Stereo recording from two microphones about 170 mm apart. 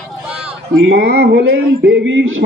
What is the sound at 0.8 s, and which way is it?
Speech, 65° right (ahead or behind).